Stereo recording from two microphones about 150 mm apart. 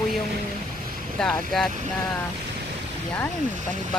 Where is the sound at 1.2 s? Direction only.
5° left (ahead or behind).